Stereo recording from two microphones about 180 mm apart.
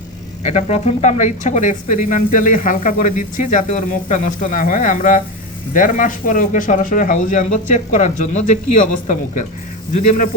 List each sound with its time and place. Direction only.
0.4 s speech: 40° left (ahead or behind)